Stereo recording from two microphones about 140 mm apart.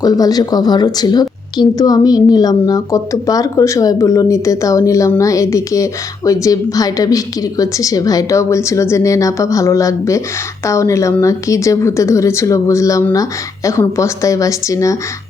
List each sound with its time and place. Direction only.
0.0 s a woman's voice: 25° left (ahead or behind)